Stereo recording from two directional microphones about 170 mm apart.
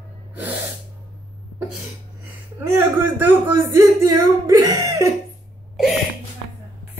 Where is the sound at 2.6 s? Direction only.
10° right (ahead or behind).